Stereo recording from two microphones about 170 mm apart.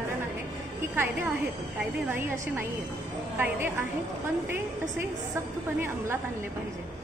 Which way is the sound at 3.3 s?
10° right (ahead or behind).